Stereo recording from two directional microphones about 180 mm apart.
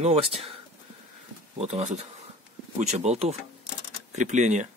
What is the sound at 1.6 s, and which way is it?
Speech, 40° right (ahead or behind).